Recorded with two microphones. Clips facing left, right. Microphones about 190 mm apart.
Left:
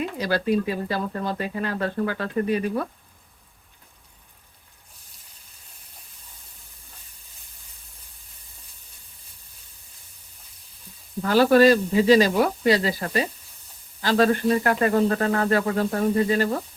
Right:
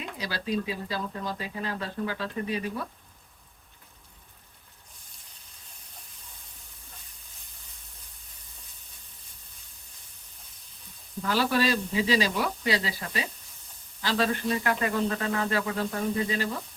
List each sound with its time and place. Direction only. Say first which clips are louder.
0.2 s speech: left 7 dB; 55° left (ahead or behind)
11.2 s speech: left 10 dB; 45° left (ahead or behind)